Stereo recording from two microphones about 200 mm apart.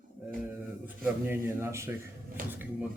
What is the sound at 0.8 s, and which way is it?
Speech, 10° right (ahead or behind).